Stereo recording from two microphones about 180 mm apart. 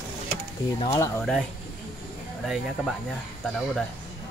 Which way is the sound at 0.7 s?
20° left (ahead or behind).